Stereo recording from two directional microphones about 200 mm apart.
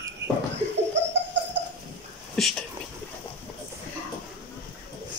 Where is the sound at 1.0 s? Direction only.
65° right (ahead or behind).